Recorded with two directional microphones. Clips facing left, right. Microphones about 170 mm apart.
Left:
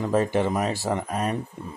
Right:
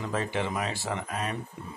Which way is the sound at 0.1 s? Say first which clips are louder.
Left 8 dB; 45° left (ahead or behind).